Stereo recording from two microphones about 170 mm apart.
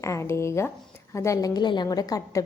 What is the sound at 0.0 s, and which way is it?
A woman's voice, 15° left (ahead or behind).